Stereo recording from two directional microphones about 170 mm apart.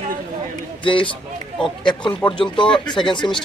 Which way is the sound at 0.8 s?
30° left (ahead or behind).